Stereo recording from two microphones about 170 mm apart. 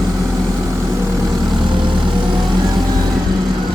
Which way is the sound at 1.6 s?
25° right (ahead or behind).